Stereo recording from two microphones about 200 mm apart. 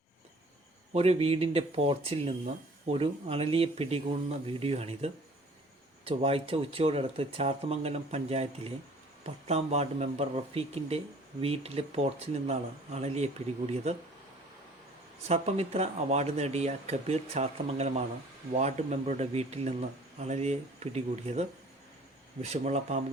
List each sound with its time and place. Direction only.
0.9 s speech: 30° right (ahead or behind)
15.3 s speech: 30° right (ahead or behind)